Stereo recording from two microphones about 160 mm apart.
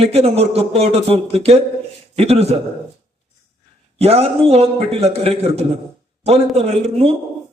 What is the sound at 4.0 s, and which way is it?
A man's voice, 40° right (ahead or behind).